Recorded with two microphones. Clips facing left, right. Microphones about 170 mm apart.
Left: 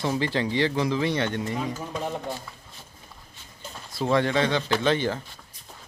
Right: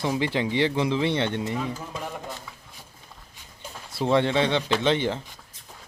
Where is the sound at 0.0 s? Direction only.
15° right (ahead or behind).